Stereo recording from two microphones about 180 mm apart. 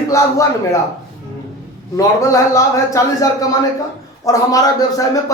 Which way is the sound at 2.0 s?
15° left (ahead or behind).